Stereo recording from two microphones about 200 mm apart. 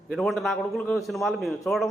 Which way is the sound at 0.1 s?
Centre (ahead or behind).